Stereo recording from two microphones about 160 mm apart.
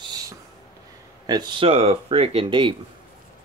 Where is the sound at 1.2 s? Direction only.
25° right (ahead or behind).